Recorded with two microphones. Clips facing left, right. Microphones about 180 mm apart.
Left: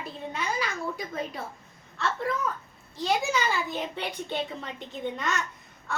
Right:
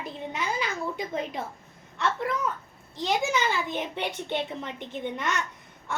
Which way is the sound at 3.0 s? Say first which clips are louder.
Even; 20° right (ahead or behind).